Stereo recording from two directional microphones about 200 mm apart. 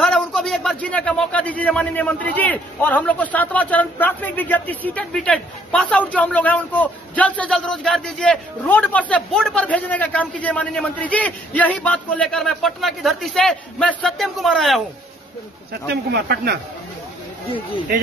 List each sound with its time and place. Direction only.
0.0 s a man's voice: centre (ahead or behind)
15.7 s speech: 50° right (ahead or behind)